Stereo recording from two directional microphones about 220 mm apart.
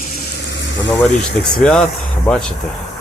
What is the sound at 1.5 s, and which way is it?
Speech, 5° left (ahead or behind).